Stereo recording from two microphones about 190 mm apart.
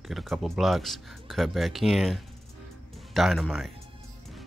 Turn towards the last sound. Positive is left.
turn(degrees=0)  # may be behind; listen again after turning